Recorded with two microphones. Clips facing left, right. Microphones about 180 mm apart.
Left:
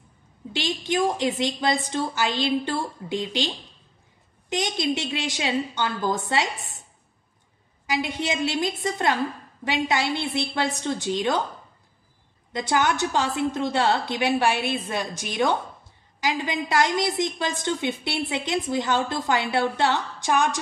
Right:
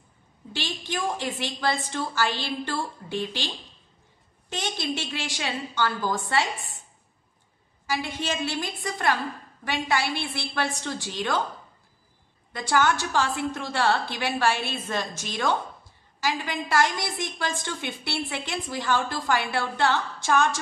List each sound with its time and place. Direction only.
0.5 s a woman's voice: 20° left (ahead or behind)
7.8 s a woman's voice: 20° left (ahead or behind)
12.5 s a woman's voice: 20° left (ahead or behind)